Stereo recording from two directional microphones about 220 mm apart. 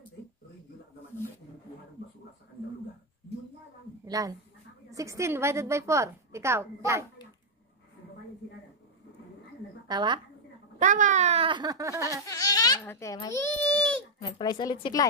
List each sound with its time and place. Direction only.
4.0 s a woman's voice: 15° right (ahead or behind)
9.8 s speech: 20° right (ahead or behind)
10.8 s speech: 35° right (ahead or behind); by 12.2 s 15° right (ahead or behind)
12.3 s a child's voice: 15° left (ahead or behind)
14.2 s a woman's voice: 20° left (ahead or behind)